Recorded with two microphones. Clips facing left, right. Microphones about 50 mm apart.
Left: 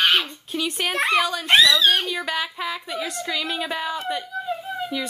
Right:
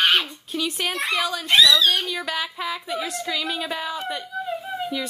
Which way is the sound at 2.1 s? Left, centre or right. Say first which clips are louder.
Left 1 dB; centre.